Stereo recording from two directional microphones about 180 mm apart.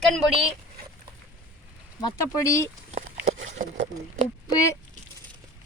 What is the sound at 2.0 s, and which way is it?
Speech, 20° left (ahead or behind).